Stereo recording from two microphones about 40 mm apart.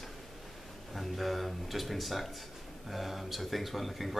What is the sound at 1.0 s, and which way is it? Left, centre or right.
Speech, centre.